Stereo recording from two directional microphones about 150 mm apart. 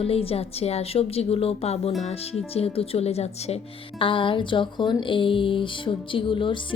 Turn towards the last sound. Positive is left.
turn(degrees=35)  # may be behind; listen again after turning